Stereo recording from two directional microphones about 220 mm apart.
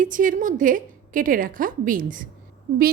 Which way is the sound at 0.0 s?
35° right (ahead or behind).